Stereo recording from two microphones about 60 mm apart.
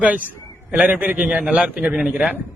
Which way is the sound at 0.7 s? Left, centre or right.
Right.